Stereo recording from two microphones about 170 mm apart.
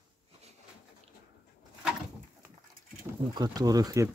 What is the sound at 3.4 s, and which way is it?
Speech, 20° right (ahead or behind).